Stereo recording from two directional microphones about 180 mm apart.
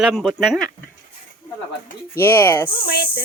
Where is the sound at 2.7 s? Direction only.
55° left (ahead or behind).